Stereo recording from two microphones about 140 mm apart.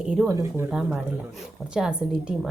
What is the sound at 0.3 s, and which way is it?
Speech, 20° right (ahead or behind).